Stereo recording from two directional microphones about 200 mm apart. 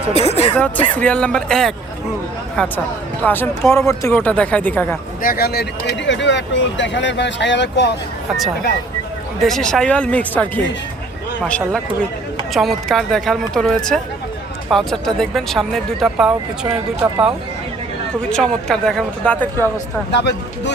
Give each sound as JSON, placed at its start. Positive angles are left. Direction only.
{"t": 0.1, "sound": "speech", "side_deg": 30}
{"t": 0.9, "sound": "speech", "side_deg": 5}
{"t": 5.2, "sound": "speech", "side_deg": 50}
{"t": 9.4, "sound": "speech", "side_deg": 0}
{"t": 18.2, "sound": "speech", "side_deg": 5}
{"t": 20.1, "sound": "speech", "side_deg": 55}